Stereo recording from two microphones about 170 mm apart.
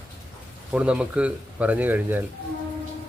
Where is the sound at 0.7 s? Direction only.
5° right (ahead or behind).